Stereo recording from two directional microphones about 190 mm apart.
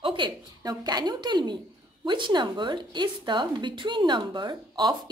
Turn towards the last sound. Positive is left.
turn(degrees=-20)  # may be behind; listen again after turning